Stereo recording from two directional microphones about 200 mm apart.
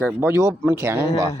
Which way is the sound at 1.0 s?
30° left (ahead or behind).